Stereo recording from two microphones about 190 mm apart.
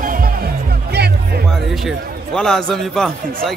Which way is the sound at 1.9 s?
Centre (ahead or behind).